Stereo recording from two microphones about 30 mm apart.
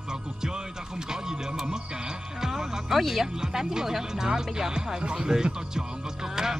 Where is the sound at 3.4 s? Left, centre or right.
Centre.